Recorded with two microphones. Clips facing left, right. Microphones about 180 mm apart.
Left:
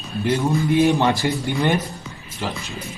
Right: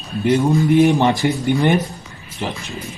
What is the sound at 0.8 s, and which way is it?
Speech, 20° right (ahead or behind).